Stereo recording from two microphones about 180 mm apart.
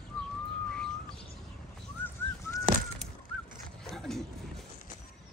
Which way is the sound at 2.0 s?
10° left (ahead or behind).